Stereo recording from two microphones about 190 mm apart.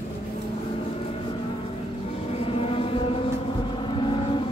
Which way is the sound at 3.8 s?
25° left (ahead or behind).